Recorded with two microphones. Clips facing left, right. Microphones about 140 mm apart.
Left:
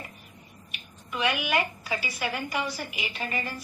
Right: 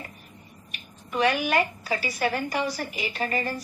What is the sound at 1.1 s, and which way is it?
A woman's voice, 40° right (ahead or behind).